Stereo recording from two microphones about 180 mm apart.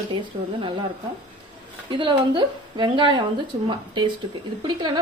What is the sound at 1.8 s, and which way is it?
A woman's voice, 25° right (ahead or behind).